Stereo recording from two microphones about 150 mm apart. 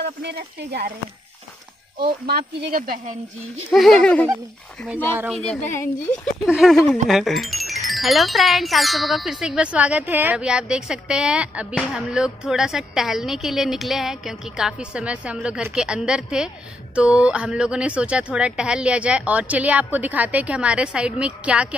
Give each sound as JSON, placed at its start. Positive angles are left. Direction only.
{"t": 0.7, "sound": "speech", "side_deg": -90}
{"t": 2.0, "sound": "speech", "side_deg": -90}
{"t": 3.7, "sound": "speech", "side_deg": 5}
{"t": 5.3, "sound": "speech", "side_deg": 5}